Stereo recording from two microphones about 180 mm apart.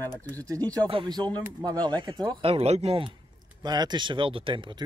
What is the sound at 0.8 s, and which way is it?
Speech, 25° right (ahead or behind).